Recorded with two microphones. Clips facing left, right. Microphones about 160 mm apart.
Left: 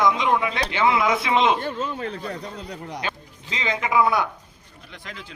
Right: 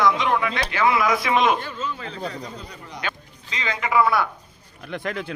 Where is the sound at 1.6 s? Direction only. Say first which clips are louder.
Left 3 dB; 55° left (ahead or behind).